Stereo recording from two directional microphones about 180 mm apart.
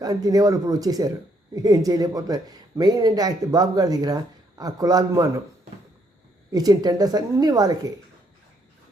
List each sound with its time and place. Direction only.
0.0 s speech: 20° right (ahead or behind)
6.5 s speech: 20° right (ahead or behind)